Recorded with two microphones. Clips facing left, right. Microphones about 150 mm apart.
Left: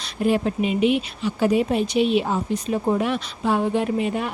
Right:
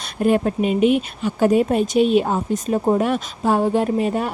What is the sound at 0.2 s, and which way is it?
Speech, 50° right (ahead or behind).